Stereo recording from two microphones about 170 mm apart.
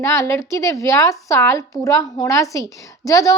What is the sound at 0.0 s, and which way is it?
A woman's voice, 15° left (ahead or behind).